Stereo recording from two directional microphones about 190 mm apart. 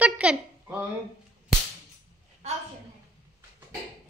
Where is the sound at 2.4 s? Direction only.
35° right (ahead or behind).